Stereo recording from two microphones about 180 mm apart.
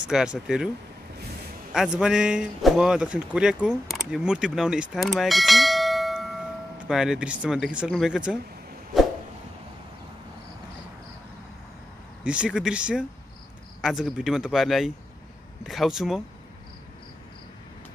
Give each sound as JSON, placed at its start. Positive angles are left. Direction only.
{"t": 0.0, "sound": "speech", "side_deg": -5}
{"t": 1.7, "sound": "speech", "side_deg": -5}
{"t": 4.9, "sound": "bell", "side_deg": 0}
{"t": 6.9, "sound": "speech", "side_deg": -5}
{"t": 12.2, "sound": "speech", "side_deg": -5}